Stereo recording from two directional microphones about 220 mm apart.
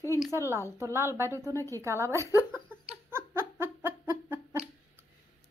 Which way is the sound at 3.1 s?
10° right (ahead or behind).